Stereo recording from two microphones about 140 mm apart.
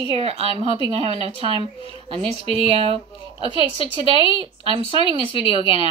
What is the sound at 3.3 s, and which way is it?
Speech, 40° left (ahead or behind).